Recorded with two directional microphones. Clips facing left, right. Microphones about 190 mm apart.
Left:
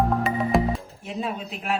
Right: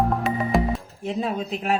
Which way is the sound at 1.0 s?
40° right (ahead or behind).